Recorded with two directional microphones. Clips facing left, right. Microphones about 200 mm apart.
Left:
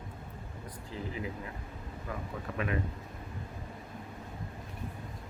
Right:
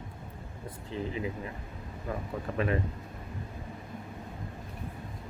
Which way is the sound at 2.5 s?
35° right (ahead or behind).